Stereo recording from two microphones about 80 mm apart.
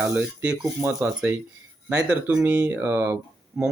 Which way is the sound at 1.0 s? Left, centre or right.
Right.